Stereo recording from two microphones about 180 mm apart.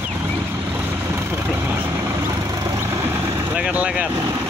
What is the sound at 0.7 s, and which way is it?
Vehicle, 15° right (ahead or behind).